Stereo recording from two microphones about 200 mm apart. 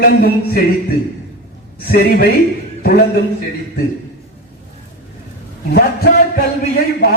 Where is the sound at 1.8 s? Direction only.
50° left (ahead or behind).